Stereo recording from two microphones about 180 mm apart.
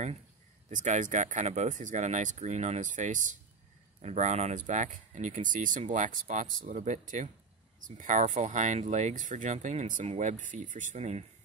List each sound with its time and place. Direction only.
0.7 s speech: 45° right (ahead or behind)